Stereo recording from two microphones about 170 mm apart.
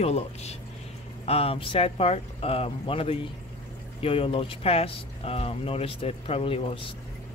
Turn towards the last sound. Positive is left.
turn(degrees=35)  # may be behind; listen again after turning